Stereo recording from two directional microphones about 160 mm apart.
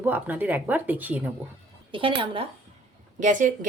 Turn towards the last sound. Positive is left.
turn(degrees=-55)  # may be behind; listen again after turning